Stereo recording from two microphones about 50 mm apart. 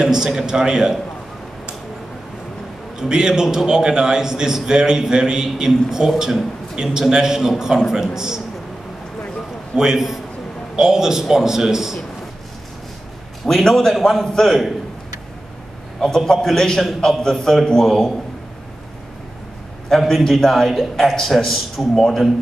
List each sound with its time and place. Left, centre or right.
0.0 s a man's voice: centre
3.0 s a man's voice: centre
9.8 s a man's voice: centre
13.5 s a man's voice: centre
14.2 s a man's voice: centre
16.0 s a man's voice: centre
19.9 s a man's voice: centre